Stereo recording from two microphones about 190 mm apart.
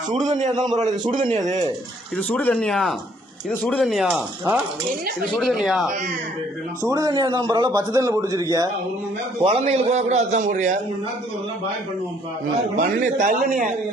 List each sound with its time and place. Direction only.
0.1 s a man's voice: 40° right (ahead or behind)
0.5 s a man's voice: 20° right (ahead or behind)
2.1 s speech: 5° left (ahead or behind)
5.3 s speech: centre (ahead or behind)
6.8 s a man's voice: 15° right (ahead or behind)
9.4 s a man's voice: 30° right (ahead or behind)
12.7 s a man's voice: 40° right (ahead or behind)